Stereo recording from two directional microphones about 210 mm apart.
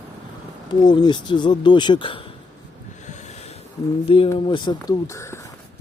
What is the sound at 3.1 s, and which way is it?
Snort, 35° left (ahead or behind).